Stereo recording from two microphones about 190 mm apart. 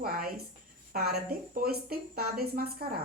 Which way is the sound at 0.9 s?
50° right (ahead or behind).